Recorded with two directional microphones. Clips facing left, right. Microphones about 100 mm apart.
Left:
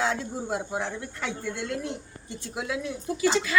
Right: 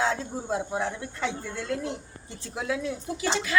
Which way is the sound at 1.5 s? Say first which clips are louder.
Right 1 dB; 25° right (ahead or behind).